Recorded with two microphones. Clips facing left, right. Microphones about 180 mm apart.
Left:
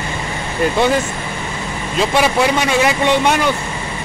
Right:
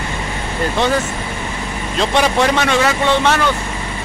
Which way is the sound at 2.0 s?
10° left (ahead or behind).